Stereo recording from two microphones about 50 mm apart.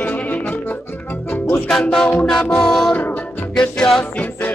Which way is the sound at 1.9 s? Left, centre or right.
Centre.